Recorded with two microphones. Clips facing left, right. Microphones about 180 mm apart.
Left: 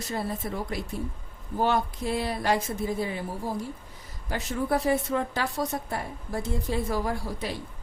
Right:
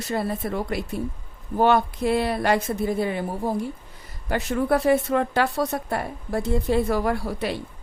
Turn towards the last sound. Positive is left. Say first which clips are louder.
# right 6 dB
turn(degrees=-65)  # may be behind; listen again after turning